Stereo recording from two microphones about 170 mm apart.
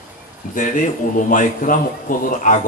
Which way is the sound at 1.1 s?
50° left (ahead or behind).